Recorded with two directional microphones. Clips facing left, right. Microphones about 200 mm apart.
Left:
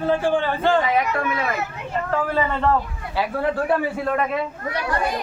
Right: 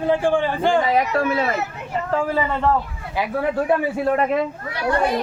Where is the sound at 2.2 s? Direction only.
10° right (ahead or behind).